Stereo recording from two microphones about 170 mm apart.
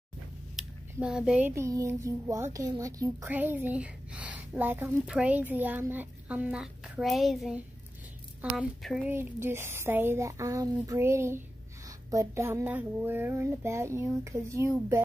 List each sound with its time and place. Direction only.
0.6 s a sound: centre (ahead or behind)
1.0 s speech: 5° right (ahead or behind)
1.5 s a woman's voice: 20° right (ahead or behind)